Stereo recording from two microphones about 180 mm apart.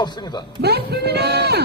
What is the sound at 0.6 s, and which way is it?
Speech, 65° right (ahead or behind).